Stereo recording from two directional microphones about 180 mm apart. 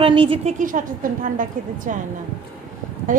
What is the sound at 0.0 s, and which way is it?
Speech, 30° right (ahead or behind).